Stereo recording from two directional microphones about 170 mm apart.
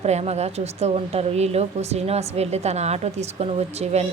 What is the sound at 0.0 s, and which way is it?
A woman's voice, 40° right (ahead or behind).